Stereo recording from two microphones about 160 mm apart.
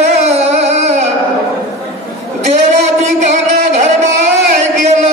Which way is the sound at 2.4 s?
45° right (ahead or behind).